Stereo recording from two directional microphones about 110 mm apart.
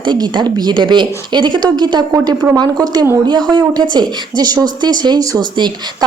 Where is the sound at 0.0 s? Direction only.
45° right (ahead or behind).